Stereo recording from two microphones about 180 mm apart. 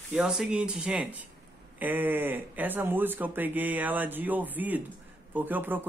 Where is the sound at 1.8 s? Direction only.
10° right (ahead or behind).